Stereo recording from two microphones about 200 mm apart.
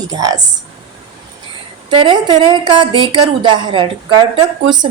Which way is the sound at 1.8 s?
25° right (ahead or behind).